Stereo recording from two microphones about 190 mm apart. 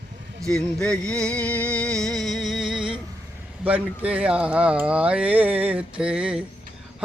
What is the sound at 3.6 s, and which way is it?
Speech, 5° right (ahead or behind).